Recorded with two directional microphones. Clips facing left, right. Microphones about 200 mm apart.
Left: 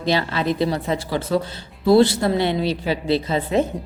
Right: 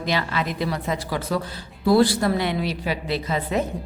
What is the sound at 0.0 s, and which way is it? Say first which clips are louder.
Speech: left 4 dB; 30° left (ahead or behind).